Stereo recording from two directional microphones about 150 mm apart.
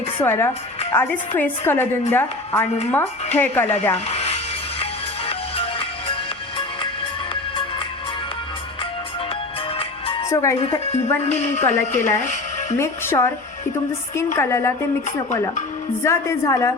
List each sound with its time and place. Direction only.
0.2 s a woman's voice: 15° left (ahead or behind)
3.9 s speech: 45° left (ahead or behind)
4.8 s music: 40° left (ahead or behind)
10.2 s speech: 20° left (ahead or behind)
11.2 s a woman's voice: 50° left (ahead or behind)
12.7 s speech: 20° left (ahead or behind)
14.3 s a woman's voice: 15° left (ahead or behind)
16.0 s a woman's voice: 20° left (ahead or behind)